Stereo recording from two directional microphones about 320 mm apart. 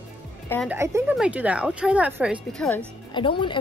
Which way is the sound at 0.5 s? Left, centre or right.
Centre.